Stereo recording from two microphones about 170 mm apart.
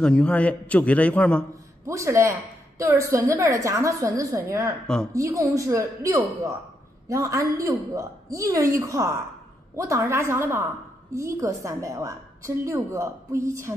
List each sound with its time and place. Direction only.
0.0 s a man's voice: 5° left (ahead or behind)
1.9 s a woman's voice: 15° right (ahead or behind)